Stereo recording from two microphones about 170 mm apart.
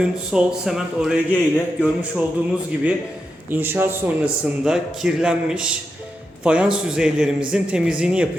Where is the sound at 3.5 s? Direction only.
10° right (ahead or behind).